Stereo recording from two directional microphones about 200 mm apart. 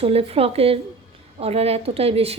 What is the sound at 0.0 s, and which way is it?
A woman's voice, 30° right (ahead or behind).